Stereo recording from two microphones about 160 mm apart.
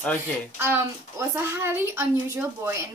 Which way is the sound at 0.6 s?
15° right (ahead or behind).